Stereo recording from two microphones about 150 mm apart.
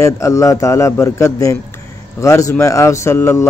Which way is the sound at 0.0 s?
20° left (ahead or behind).